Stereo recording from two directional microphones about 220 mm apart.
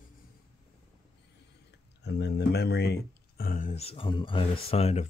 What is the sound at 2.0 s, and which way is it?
Speech, 50° left (ahead or behind).